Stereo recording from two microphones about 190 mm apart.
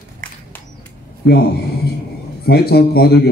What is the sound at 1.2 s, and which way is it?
Speech, 60° left (ahead or behind).